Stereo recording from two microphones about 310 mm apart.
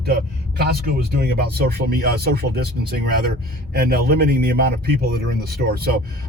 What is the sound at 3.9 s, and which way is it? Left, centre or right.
Speech, right.